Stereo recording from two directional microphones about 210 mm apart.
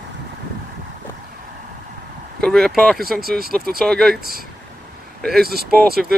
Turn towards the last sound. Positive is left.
turn(degrees=-45)  # may be behind; listen again after turning